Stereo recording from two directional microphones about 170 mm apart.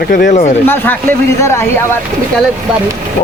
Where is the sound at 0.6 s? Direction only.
10° left (ahead or behind).